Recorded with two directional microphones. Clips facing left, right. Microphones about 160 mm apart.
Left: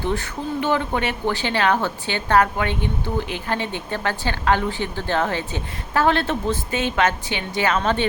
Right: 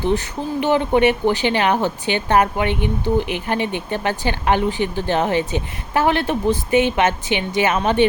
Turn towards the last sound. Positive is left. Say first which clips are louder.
# right 3 dB
turn(degrees=-15)  # may be behind; listen again after turning